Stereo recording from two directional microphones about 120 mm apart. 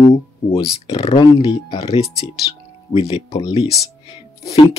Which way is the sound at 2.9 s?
55° left (ahead or behind).